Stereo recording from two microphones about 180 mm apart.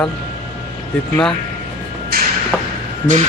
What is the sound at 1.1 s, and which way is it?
Speech, 5° left (ahead or behind).